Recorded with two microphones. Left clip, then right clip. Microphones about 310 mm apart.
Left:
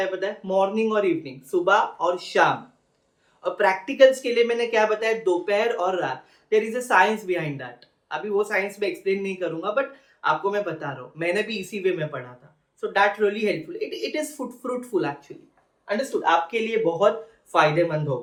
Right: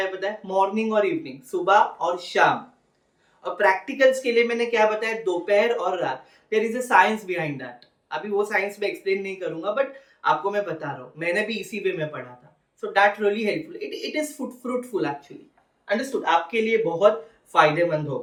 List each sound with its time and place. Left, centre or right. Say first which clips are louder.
0.2 s speech: right 2 dB; centre